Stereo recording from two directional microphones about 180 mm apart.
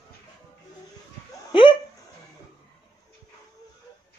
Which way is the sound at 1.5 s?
30° left (ahead or behind).